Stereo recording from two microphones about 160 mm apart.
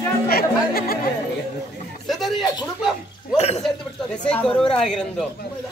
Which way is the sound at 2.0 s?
Centre (ahead or behind).